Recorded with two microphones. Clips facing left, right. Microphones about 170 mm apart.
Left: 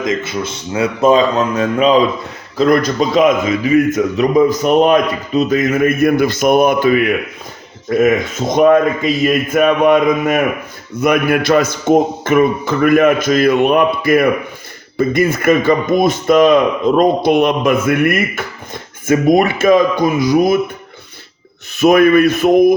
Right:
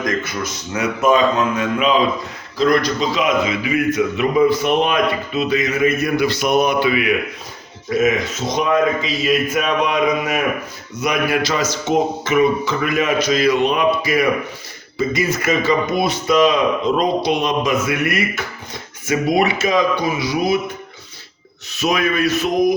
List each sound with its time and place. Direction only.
0.0 s speech: 25° left (ahead or behind)
2.6 s a man's voice: 50° left (ahead or behind)
21.7 s a man's voice: 55° left (ahead or behind)